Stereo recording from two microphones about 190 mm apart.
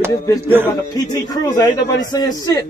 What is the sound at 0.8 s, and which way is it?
A man's voice, 20° left (ahead or behind).